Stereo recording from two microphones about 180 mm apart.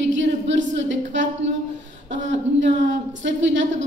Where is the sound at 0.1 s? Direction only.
90° right.